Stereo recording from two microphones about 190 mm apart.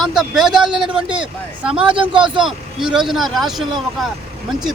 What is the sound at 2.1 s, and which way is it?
Speech, 25° right (ahead or behind).